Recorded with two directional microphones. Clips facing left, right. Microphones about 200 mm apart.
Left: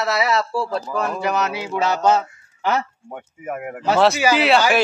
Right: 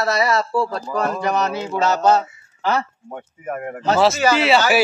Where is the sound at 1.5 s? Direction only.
10° left (ahead or behind).